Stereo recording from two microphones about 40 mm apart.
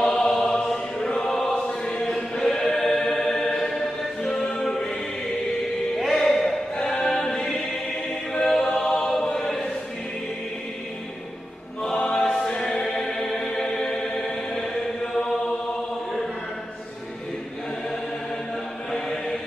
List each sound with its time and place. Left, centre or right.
0.0 s a sound: centre
0.7 s choir: centre
5.9 s music: centre
8.5 s a sound: centre
9.0 s choir: centre
12.0 s choir: centre
18.9 s chant: centre